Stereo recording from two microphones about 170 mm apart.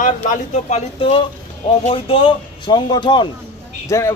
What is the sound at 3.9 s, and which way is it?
Speech, 15° left (ahead or behind).